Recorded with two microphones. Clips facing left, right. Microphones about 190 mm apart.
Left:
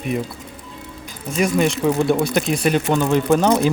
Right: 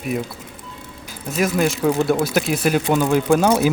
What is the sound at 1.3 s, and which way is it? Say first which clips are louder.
Speech: left 1 dB; centre (ahead or behind).